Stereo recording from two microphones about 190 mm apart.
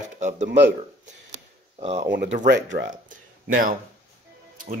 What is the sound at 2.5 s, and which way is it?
Speech, 70° right (ahead or behind).